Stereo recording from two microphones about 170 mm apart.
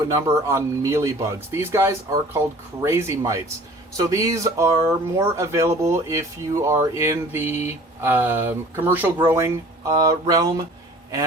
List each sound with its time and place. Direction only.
0.1 s speech: 20° right (ahead or behind)